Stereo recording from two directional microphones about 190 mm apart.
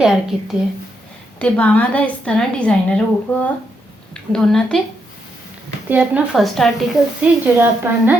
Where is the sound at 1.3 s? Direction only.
10° left (ahead or behind).